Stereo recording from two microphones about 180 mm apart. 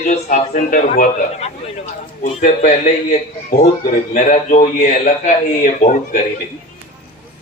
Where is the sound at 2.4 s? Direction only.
45° left (ahead or behind).